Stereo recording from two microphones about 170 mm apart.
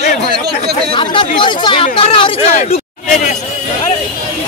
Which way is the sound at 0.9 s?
30° left (ahead or behind).